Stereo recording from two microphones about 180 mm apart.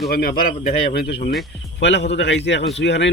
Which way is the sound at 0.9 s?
55° left (ahead or behind).